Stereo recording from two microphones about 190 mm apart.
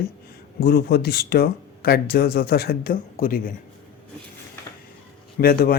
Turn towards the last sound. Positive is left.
turn(degrees=55)  # may be behind; listen again after turning